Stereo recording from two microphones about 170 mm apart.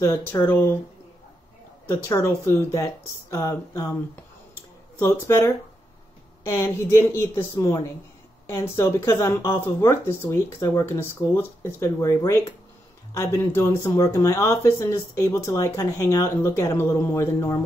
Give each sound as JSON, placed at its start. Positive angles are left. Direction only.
{"t": 0.0, "sound": "speech", "side_deg": 15}
{"t": 1.9, "sound": "speech", "side_deg": 15}
{"t": 4.9, "sound": "speech", "side_deg": 15}
{"t": 6.5, "sound": "speech", "side_deg": 15}